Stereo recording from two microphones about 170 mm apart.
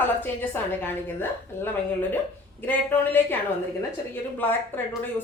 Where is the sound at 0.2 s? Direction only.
10° left (ahead or behind).